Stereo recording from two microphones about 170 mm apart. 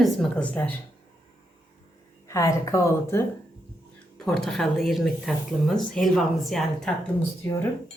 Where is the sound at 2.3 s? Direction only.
20° left (ahead or behind).